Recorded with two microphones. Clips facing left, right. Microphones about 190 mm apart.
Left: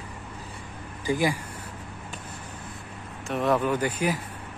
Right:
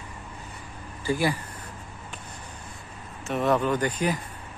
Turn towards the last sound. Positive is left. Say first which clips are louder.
# even
turn(degrees=10)  # may be behind; listen again after turning